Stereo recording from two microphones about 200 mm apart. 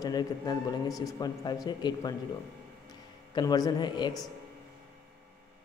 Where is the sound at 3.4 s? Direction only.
20° left (ahead or behind).